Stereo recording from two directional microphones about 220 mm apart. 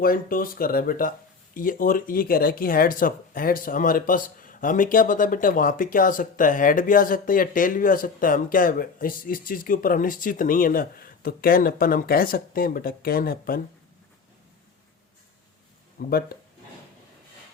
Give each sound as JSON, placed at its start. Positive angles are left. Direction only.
{"t": 0.0, "sound": "speech", "side_deg": 40}
{"t": 16.0, "sound": "speech", "side_deg": 45}